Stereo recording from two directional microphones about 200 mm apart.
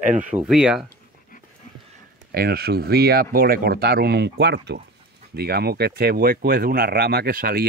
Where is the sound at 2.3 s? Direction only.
50° right (ahead or behind).